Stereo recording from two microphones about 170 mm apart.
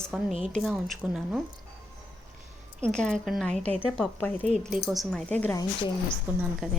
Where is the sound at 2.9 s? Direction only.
Centre (ahead or behind).